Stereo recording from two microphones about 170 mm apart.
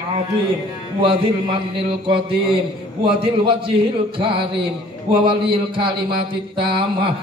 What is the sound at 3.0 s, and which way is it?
A man's voice, 30° right (ahead or behind).